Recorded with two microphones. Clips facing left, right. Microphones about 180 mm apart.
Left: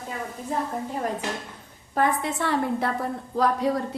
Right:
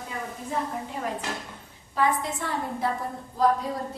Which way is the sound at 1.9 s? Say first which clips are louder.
Left 2 dB; 60° left (ahead or behind).